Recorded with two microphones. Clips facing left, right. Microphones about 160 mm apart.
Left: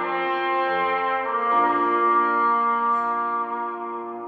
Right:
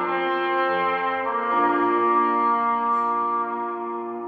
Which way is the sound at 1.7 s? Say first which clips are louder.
Right 2 dB; 40° right (ahead or behind).